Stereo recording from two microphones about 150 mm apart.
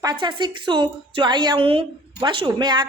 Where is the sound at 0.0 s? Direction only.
30° right (ahead or behind).